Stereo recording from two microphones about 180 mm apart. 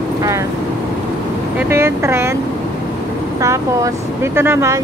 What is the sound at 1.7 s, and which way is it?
Speech, 15° right (ahead or behind).